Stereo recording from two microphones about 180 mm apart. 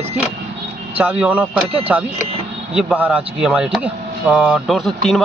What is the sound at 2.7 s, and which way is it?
Speech, 5° right (ahead or behind).